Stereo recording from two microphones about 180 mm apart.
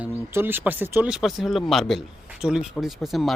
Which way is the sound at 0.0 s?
10° right (ahead or behind).